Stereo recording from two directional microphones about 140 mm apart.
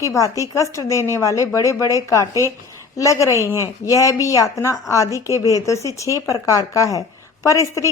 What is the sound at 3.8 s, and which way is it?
A woman's voice, 25° left (ahead or behind).